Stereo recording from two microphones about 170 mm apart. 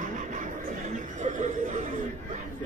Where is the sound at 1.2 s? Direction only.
45° right (ahead or behind).